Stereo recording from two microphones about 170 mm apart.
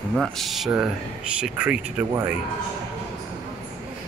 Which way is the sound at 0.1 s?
Centre (ahead or behind).